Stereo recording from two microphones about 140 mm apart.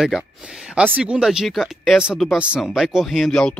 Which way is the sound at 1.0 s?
5° right (ahead or behind).